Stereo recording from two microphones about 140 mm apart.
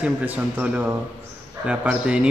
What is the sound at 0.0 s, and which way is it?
Speech, 10° right (ahead or behind).